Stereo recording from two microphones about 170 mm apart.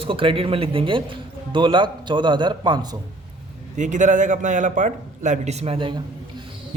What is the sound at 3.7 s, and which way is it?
A man's voice, 45° right (ahead or behind).